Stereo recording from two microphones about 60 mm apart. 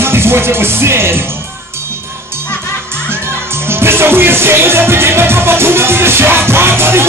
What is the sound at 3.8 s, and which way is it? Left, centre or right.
Music, right.